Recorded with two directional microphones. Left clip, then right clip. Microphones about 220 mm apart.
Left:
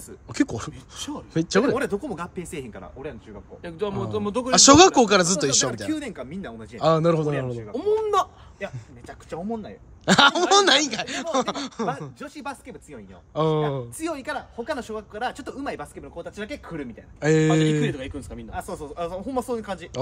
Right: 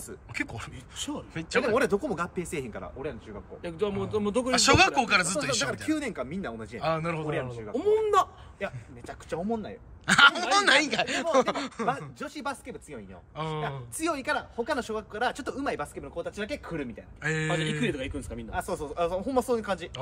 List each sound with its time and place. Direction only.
0.3 s speech: 25° left (ahead or behind)
1.6 s speech: centre (ahead or behind)
3.6 s speech: 10° left (ahead or behind)
4.5 s speech: 20° left (ahead or behind)
5.7 s speech: centre (ahead or behind)
6.8 s speech: 20° left (ahead or behind)
7.7 s speech: 10° left (ahead or behind)
10.0 s speech: 15° left (ahead or behind); by 13.0 s centre (ahead or behind)
13.3 s speech: 20° left (ahead or behind)
13.9 s speech: centre (ahead or behind)
17.2 s speech: 20° left (ahead or behind)
17.9 s speech: 5° left (ahead or behind)